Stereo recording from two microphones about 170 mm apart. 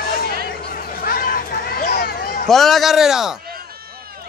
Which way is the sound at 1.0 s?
60° left (ahead or behind).